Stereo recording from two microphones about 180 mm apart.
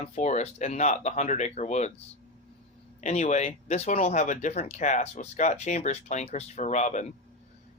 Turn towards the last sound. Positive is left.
turn(degrees=40)  # may be behind; listen again after turning